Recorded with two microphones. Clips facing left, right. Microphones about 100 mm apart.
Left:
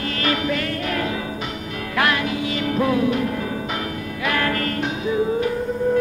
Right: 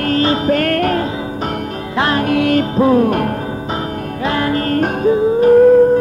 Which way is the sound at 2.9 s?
50° right (ahead or behind).